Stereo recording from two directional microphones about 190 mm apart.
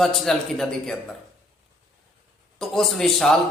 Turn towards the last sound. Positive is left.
turn(degrees=0)  # may be behind; listen again after turning